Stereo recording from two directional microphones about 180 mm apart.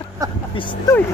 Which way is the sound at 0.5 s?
25° left (ahead or behind).